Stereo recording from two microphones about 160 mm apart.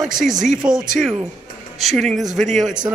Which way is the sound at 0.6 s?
25° right (ahead or behind).